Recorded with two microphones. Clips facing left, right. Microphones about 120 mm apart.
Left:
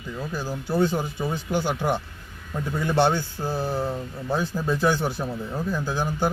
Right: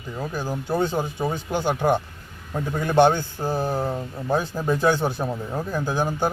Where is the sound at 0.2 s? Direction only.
20° right (ahead or behind).